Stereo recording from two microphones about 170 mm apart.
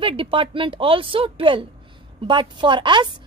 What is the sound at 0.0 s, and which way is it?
A woman's voice, 30° right (ahead or behind).